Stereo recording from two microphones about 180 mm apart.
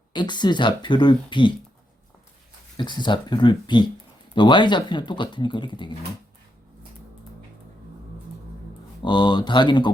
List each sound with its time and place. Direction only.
0.1 s speech: 25° left (ahead or behind)
2.7 s speech: 25° left (ahead or behind)
9.0 s speech: 25° left (ahead or behind)